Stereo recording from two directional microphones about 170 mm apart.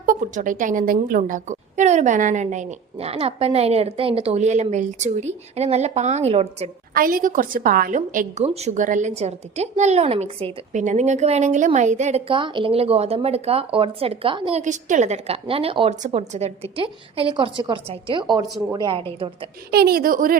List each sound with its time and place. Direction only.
0.0 s a woman's voice: 50° right (ahead or behind)
6.9 s a woman's voice: 55° right (ahead or behind); by 14.6 s 30° right (ahead or behind)
14.6 s a woman's voice: 45° right (ahead or behind); by 19.0 s 25° right (ahead or behind)
19.7 s a woman's voice: 65° right (ahead or behind)